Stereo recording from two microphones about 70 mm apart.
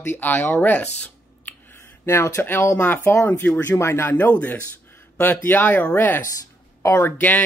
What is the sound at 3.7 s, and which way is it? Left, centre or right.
Speech, left.